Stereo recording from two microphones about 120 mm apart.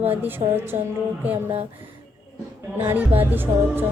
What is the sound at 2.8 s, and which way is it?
A woman's voice, 15° right (ahead or behind).